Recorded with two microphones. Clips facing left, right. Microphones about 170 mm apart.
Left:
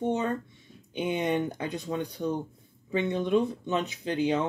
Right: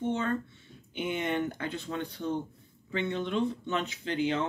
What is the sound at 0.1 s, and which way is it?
Speech, 15° left (ahead or behind).